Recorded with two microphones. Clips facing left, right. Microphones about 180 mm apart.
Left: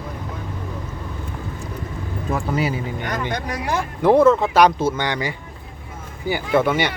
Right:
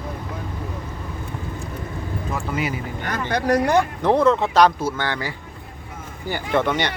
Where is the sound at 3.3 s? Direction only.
70° right (ahead or behind).